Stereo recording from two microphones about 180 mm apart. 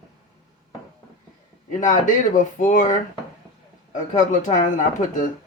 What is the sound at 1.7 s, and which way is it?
Speech, 45° left (ahead or behind).